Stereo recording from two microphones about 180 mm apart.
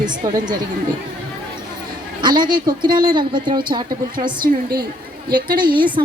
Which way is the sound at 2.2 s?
25° right (ahead or behind).